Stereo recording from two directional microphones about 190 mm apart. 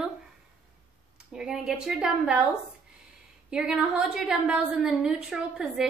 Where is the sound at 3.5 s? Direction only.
5° right (ahead or behind).